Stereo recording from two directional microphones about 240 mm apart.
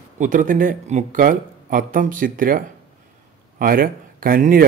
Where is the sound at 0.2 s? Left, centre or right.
Right.